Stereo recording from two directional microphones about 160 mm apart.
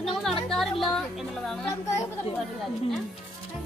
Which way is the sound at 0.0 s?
Centre (ahead or behind).